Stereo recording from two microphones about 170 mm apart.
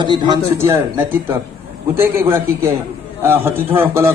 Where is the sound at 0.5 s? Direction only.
15° right (ahead or behind).